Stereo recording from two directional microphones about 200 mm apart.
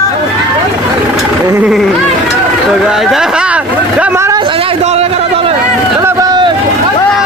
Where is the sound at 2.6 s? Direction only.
Centre (ahead or behind).